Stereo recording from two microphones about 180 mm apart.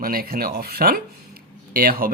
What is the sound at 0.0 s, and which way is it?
Speech, 55° right (ahead or behind).